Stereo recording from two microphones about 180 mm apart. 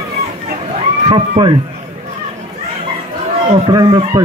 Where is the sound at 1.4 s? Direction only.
35° right (ahead or behind).